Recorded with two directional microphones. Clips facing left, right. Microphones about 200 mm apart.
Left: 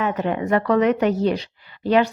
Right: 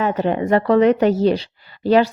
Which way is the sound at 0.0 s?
30° right (ahead or behind).